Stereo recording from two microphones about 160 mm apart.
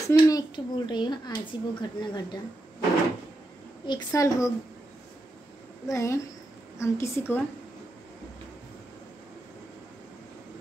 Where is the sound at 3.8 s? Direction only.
25° left (ahead or behind).